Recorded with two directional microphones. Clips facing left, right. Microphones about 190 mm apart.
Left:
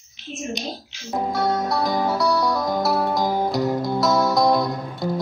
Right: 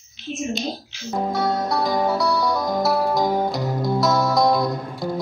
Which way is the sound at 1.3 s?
Centre (ahead or behind).